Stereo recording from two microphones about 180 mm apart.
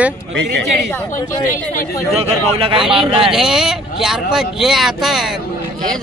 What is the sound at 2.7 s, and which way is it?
Speech, 5° right (ahead or behind).